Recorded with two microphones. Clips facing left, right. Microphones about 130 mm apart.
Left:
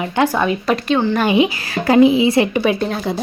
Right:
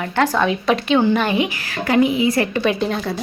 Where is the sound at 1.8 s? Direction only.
30° left (ahead or behind).